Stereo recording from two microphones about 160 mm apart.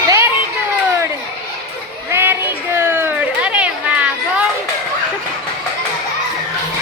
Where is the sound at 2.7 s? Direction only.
15° right (ahead or behind).